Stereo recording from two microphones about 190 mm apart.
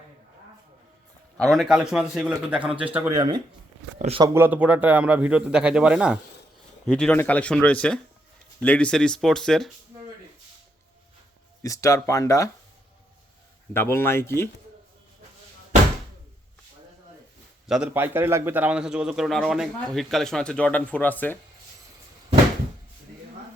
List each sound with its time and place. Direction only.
1.4 s a man's voice: centre (ahead or behind)
3.1 s speech: 25° right (ahead or behind)
3.9 s speech: 35° right (ahead or behind)
4.2 s a man's voice: 10° right (ahead or behind)
11.6 s speech: 15° left (ahead or behind)
13.7 s speech: 10° left (ahead or behind)
17.7 s a man's voice: 10° right (ahead or behind); by 21.3 s 10° left (ahead or behind)